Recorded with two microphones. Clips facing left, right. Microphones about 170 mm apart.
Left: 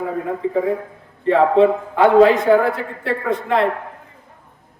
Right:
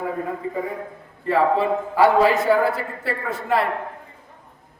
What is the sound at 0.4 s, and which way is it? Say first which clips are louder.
Speech: left 8 dB; 90° left.